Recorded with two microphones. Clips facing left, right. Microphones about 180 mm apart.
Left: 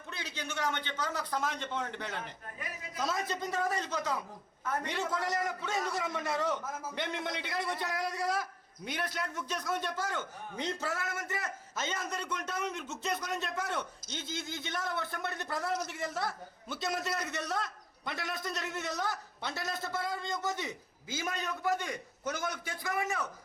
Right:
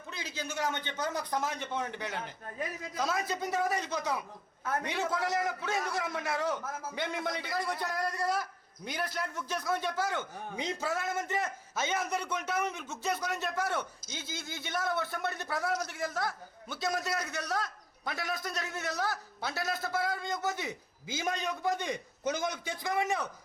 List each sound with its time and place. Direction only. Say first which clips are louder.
0.9 s a man's voice: right 2 dB; 10° right (ahead or behind)
3.0 s a man's voice: right 1 dB; centre (ahead or behind)